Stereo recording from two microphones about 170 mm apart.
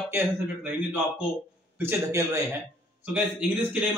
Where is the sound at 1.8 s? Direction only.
15° right (ahead or behind).